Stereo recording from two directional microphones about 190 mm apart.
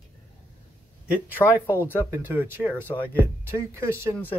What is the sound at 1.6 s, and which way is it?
Speech, 15° left (ahead or behind).